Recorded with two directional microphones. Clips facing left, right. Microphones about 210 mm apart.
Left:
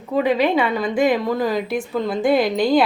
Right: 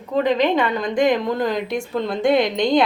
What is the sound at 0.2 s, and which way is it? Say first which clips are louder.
Speech: even; 10° left (ahead or behind).